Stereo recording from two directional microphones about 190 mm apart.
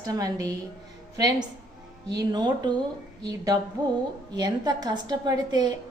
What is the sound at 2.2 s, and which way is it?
A woman's voice, 20° right (ahead or behind).